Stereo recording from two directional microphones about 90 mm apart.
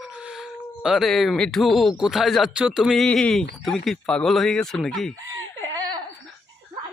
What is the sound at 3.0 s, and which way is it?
Speech, 10° left (ahead or behind).